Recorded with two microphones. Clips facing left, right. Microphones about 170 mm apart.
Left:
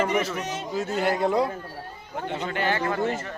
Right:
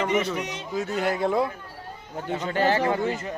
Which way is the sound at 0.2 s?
Centre (ahead or behind).